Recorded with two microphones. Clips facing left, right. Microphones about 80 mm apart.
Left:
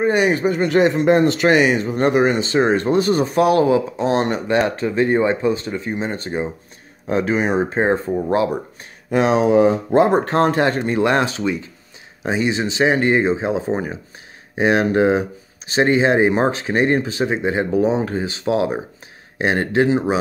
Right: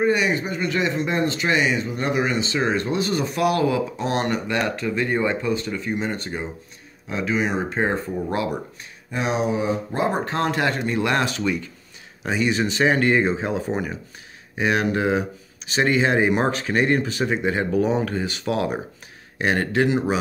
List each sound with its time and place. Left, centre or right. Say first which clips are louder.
0.1 s speech: left 5 dB; left
7.1 s speech: left 5 dB; left
9.1 s speech: left 9 dB; left
10.2 s speech: left 6 dB; left